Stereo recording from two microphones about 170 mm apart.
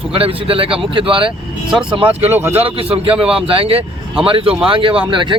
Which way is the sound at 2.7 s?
35° right (ahead or behind).